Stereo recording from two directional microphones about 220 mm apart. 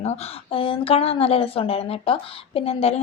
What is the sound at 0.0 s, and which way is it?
A woman's voice, 25° left (ahead or behind).